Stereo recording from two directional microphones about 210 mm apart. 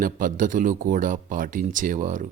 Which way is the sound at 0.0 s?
40° right (ahead or behind).